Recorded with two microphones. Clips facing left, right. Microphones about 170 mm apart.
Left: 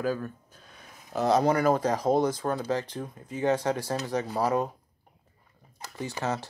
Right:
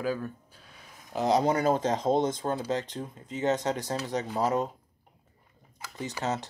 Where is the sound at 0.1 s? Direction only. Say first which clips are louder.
Left 1 dB; 40° left (ahead or behind).